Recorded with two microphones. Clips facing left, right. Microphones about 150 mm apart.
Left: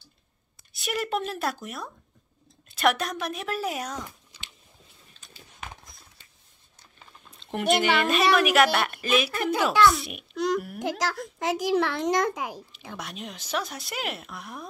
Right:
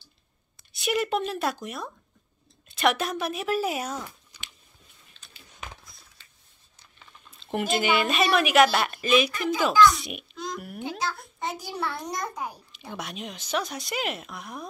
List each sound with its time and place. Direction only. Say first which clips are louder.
0.7 s speech: right 3 dB; centre (ahead or behind)
7.2 s a sound: right 3 dB; 5° right (ahead or behind)
8.0 s speech: left 2 dB; centre (ahead or behind)
9.3 s speech: even; 60° left (ahead or behind)
10.3 s a child's voice: left 11 dB; 75° left (ahead or behind)
10.8 s a child's voice: left 3 dB; 90° left
12.9 s speech: right 2 dB; centre (ahead or behind)